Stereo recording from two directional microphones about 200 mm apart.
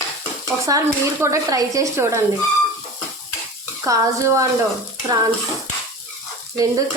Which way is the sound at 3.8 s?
15° right (ahead or behind).